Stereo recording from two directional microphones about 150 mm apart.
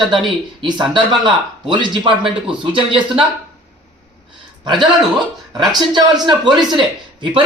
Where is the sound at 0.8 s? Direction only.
30° right (ahead or behind).